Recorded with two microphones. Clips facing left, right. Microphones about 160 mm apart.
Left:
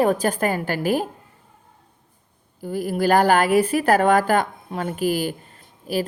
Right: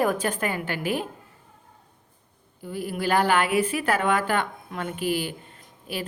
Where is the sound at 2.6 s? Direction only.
40° left (ahead or behind).